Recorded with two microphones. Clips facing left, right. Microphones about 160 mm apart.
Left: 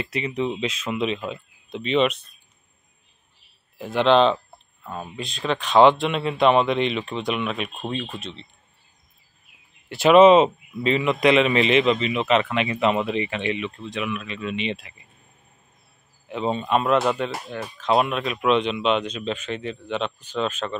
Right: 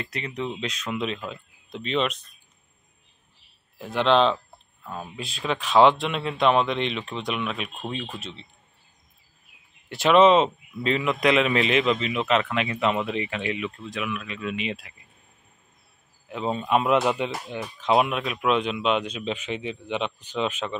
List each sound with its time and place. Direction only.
0.0 s a man's voice: 5° left (ahead or behind)
3.7 s a man's voice: centre (ahead or behind)
9.8 s a man's voice: 5° left (ahead or behind)
16.3 s speech: 5° right (ahead or behind)